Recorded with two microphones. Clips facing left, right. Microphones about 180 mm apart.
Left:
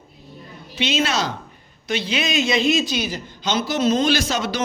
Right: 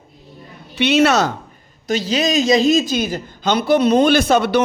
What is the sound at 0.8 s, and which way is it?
Speech, 65° right (ahead or behind).